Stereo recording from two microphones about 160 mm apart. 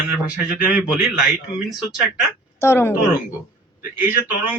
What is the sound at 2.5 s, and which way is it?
Speech, 15° left (ahead or behind).